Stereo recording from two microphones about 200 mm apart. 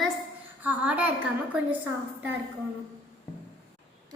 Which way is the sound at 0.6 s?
10° right (ahead or behind).